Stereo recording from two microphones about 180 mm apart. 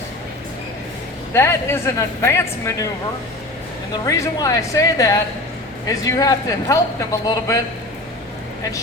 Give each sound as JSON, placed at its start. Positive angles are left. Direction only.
{"t": 1.3, "sound": "speech", "side_deg": 15}
{"t": 4.0, "sound": "a man's voice", "side_deg": 15}